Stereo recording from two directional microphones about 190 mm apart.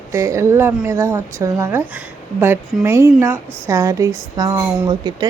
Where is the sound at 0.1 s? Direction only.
15° right (ahead or behind).